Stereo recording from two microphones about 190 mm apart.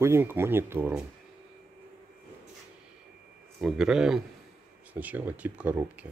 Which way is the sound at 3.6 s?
Centre (ahead or behind).